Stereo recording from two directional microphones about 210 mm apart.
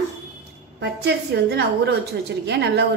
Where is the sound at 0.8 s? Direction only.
55° right (ahead or behind).